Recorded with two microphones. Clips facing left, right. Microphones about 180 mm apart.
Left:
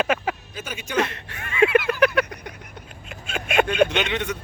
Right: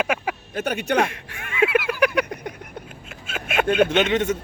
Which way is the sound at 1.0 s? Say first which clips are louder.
Right 3 dB; 10° right (ahead or behind).